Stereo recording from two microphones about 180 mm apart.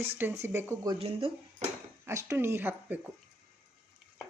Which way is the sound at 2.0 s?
15° right (ahead or behind).